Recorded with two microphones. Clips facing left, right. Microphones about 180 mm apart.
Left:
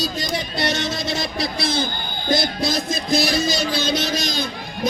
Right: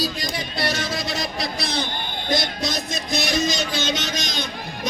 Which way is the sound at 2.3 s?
30° left (ahead or behind).